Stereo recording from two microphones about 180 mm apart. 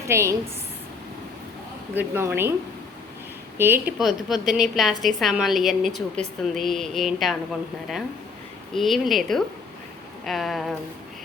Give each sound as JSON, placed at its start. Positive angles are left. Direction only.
{"t": 0.1, "sound": "a woman's voice", "side_deg": -15}
{"t": 2.0, "sound": "a woman's voice", "side_deg": -10}
{"t": 3.6, "sound": "a woman's voice", "side_deg": -10}
{"t": 8.7, "sound": "a woman's voice", "side_deg": 0}